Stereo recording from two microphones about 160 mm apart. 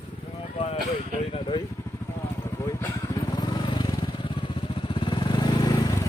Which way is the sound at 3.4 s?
25° left (ahead or behind).